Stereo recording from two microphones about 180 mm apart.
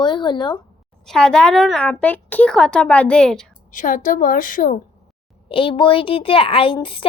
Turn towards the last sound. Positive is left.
turn(degrees=30)  # may be behind; listen again after turning